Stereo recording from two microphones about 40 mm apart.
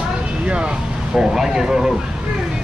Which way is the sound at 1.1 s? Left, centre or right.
Centre.